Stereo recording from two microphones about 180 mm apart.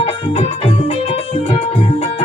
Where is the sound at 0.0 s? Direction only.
30° left (ahead or behind).